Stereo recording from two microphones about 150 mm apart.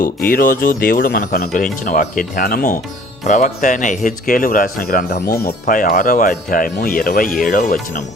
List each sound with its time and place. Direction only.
0.0 s speech: 70° left (ahead or behind)
3.2 s speech: 55° left (ahead or behind)